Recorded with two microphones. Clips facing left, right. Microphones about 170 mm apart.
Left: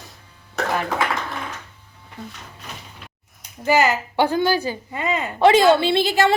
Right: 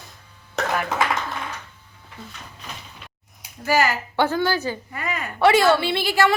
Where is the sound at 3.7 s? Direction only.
20° left (ahead or behind).